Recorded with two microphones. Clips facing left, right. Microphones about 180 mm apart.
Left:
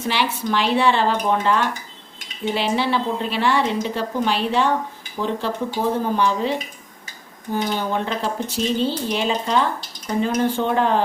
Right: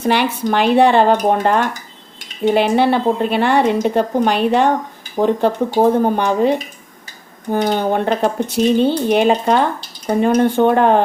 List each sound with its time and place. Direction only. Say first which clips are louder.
0.0 s speech: right 6 dB; 55° right (ahead or behind)